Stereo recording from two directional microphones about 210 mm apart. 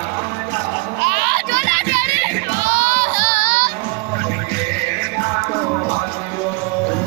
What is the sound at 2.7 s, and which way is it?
Baby cry, 45° right (ahead or behind).